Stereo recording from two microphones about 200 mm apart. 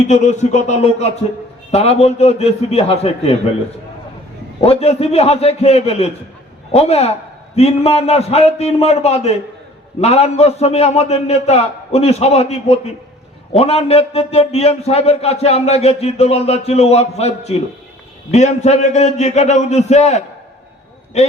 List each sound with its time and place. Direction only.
0.1 s a man's voice: 35° left (ahead or behind)
4.6 s a man's voice: 30° left (ahead or behind)